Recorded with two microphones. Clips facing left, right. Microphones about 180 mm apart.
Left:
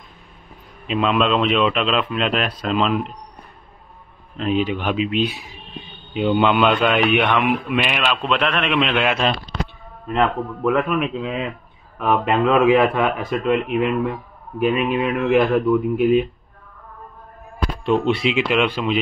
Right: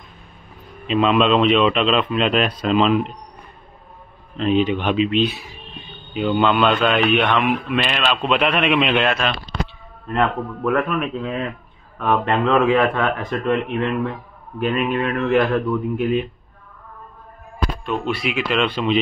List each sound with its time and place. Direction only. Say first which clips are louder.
0.8 s speech: right 2 dB; centre (ahead or behind)
4.4 s speech: right 3 dB; 5° left (ahead or behind)
9.2 s speech: left 3 dB; 35° left (ahead or behind)
10.0 s speech: left 1 dB; centre (ahead or behind)
17.8 s speech: left 7 dB; 25° left (ahead or behind)
18.5 s speech: even; 10° left (ahead or behind)